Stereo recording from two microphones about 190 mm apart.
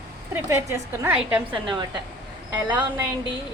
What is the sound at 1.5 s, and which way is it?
Speech, 25° right (ahead or behind).